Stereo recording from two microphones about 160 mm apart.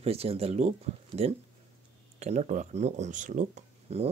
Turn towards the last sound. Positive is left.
turn(degrees=-45)  # may be behind; listen again after turning